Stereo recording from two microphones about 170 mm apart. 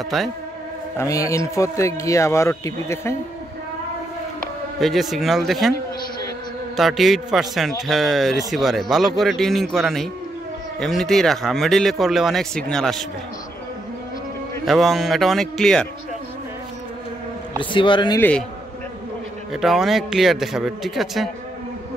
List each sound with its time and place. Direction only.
0.1 s a man's voice: centre (ahead or behind)
0.9 s a man's voice: 20° left (ahead or behind)
4.7 s a man's voice: centre (ahead or behind)
6.8 s a man's voice: centre (ahead or behind)
14.7 s a man's voice: centre (ahead or behind)
17.7 s a man's voice: 30° left (ahead or behind)
19.5 s a man's voice: centre (ahead or behind)